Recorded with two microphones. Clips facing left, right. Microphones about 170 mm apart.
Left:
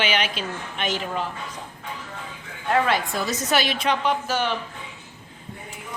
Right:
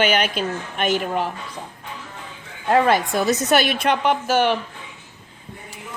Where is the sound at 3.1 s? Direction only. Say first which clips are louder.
Right 6 dB; 60° right (ahead or behind).